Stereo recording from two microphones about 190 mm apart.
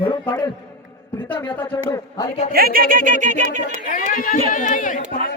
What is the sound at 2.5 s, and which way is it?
Speech, 50° right (ahead or behind).